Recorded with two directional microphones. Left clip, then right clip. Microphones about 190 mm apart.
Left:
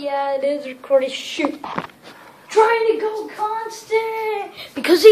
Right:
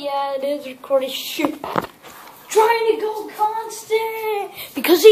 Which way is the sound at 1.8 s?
30° right (ahead or behind).